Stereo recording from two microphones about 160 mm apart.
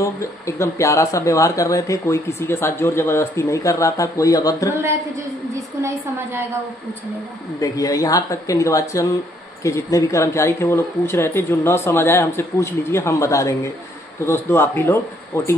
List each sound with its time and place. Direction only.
0.0 s speech: 20° left (ahead or behind)
5.5 s a woman's voice: 15° right (ahead or behind)
7.6 s speech: 20° left (ahead or behind)